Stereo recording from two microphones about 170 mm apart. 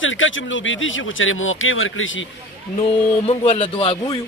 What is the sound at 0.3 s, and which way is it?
Speech, 90° left.